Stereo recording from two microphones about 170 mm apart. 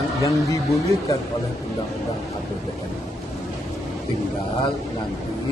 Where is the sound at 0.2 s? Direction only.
20° left (ahead or behind).